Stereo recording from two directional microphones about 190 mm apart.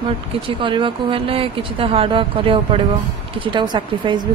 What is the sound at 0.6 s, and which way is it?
A woman's voice, 25° right (ahead or behind).